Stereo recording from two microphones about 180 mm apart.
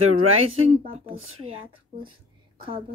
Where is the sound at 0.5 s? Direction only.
35° right (ahead or behind).